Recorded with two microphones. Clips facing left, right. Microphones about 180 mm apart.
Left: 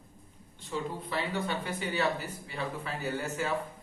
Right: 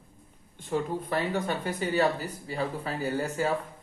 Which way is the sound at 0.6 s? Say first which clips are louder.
Right 6 dB; 50° right (ahead or behind).